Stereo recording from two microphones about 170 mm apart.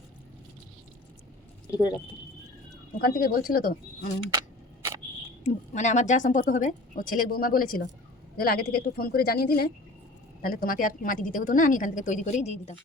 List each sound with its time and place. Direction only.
3.0 s speech: 60° left (ahead or behind)
4.3 s a sound: 20° right (ahead or behind)
5.4 s a woman's voice: 45° left (ahead or behind)